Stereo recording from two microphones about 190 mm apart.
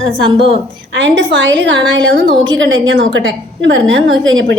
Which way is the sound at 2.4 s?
85° right.